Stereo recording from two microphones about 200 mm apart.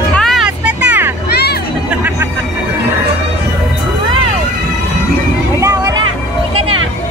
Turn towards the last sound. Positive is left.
turn(degrees=-15)  # may be behind; listen again after turning